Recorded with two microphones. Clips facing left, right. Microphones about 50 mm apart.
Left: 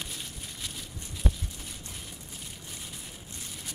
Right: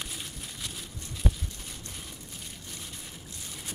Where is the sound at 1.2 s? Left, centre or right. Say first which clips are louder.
Right 1 dB; centre.